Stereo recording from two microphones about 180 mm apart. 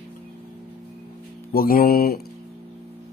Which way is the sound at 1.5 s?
55° left (ahead or behind).